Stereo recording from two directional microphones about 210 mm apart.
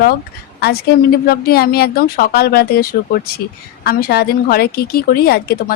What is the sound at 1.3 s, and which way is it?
A woman's voice, 45° left (ahead or behind).